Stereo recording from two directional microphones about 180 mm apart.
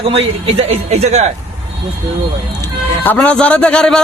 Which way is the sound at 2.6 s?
10° left (ahead or behind).